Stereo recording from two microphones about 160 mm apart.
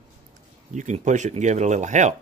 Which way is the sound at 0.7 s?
50° right (ahead or behind).